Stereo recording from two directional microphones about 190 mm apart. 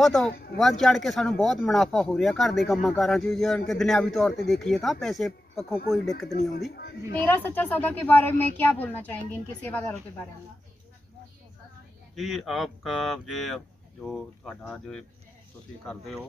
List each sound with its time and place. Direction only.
0.0 s speech: 5° left (ahead or behind)
0.3 s speech: 55° left (ahead or behind)
0.6 s speech: centre (ahead or behind)
6.7 s a woman's voice: 60° left (ahead or behind)
7.2 s speech: 10° left (ahead or behind)
12.2 s speech: centre (ahead or behind)